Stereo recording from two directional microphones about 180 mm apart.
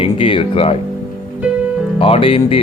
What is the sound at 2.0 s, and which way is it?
Speech, 30° left (ahead or behind).